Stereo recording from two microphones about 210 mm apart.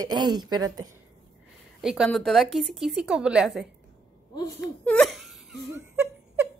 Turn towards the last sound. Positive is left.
turn(degrees=-10)  # may be behind; listen again after turning